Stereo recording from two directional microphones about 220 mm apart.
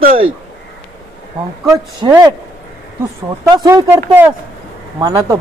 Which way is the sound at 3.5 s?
20° right (ahead or behind).